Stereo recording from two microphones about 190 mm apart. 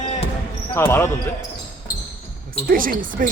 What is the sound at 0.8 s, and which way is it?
Speech, 10° left (ahead or behind).